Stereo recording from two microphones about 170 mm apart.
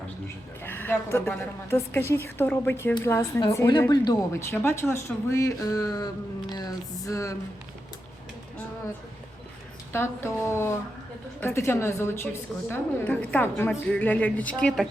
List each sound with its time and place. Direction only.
0.6 s a woman's voice: 10° left (ahead or behind)
6.5 s music: 25° left (ahead or behind)
9.9 s a woman's voice: 15° left (ahead or behind)